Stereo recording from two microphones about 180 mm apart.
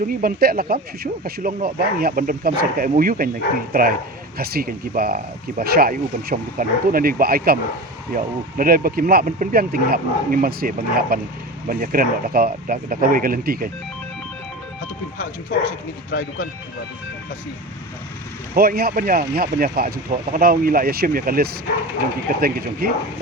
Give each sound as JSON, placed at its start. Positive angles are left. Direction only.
{"t": 0.1, "sound": "speech", "side_deg": -55}
{"t": 16.1, "sound": "speech", "side_deg": 80}
{"t": 18.5, "sound": "speech", "side_deg": -55}